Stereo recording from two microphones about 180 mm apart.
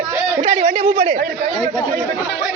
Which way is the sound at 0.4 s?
40° right (ahead or behind).